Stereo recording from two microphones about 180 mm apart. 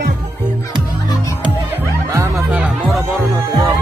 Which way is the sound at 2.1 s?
10° right (ahead or behind).